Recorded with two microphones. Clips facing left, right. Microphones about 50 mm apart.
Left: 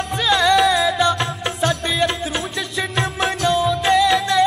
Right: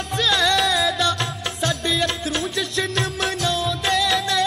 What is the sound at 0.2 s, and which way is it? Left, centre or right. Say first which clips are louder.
Music: left 4 dB; centre.